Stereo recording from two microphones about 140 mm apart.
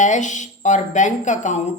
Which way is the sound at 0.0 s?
60° left (ahead or behind).